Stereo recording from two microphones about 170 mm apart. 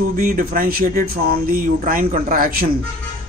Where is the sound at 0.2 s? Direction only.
50° right (ahead or behind).